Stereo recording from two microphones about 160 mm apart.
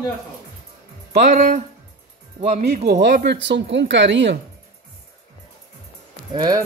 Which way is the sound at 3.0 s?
90° right.